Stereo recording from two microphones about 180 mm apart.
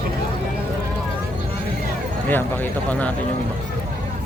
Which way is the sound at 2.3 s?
10° left (ahead or behind).